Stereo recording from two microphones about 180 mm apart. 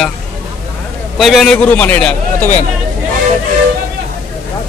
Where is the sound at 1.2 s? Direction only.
Centre (ahead or behind).